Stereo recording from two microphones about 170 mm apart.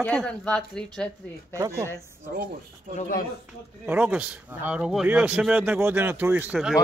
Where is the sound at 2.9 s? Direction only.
50° left (ahead or behind).